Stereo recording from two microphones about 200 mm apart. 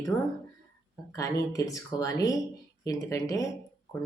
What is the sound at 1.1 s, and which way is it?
Speech, 15° left (ahead or behind).